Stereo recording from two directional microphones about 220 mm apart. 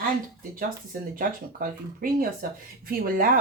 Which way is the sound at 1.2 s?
40° right (ahead or behind).